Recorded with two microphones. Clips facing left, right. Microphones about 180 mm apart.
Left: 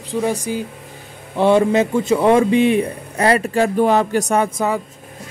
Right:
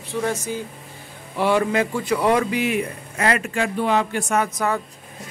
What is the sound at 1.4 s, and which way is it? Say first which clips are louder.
A man's voice: left 6 dB; 25° left (ahead or behind).